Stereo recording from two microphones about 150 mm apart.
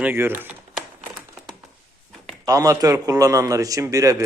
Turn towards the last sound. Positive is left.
turn(degrees=-20)  # may be behind; listen again after turning